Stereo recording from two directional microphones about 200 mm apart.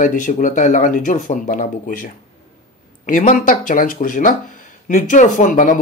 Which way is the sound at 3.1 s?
40° left (ahead or behind).